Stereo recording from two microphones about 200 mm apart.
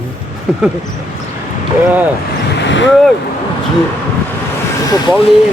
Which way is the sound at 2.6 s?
65° left (ahead or behind).